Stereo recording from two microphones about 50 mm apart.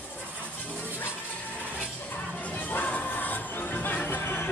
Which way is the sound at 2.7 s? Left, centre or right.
Left.